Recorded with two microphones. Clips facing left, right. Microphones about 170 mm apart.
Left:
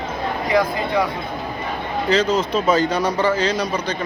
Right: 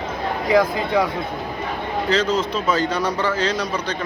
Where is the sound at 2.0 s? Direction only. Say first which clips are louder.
Left 2 dB; 10° left (ahead or behind).